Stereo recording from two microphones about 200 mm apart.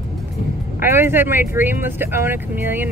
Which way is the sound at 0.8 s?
10° right (ahead or behind).